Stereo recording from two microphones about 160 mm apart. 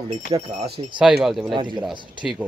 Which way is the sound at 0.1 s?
40° right (ahead or behind).